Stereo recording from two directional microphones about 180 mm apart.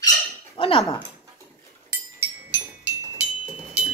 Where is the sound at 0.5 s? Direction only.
30° left (ahead or behind).